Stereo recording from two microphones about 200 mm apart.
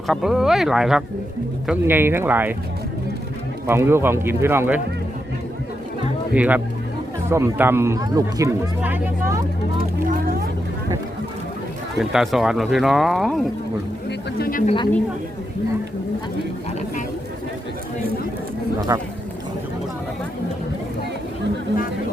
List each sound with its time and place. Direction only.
0.1 s speech: centre (ahead or behind)
3.7 s speech: 10° right (ahead or behind)
6.3 s speech: 5° right (ahead or behind)
11.9 s speech: centre (ahead or behind)
14.1 s speech: 50° left (ahead or behind)
18.9 s speech: 15° right (ahead or behind)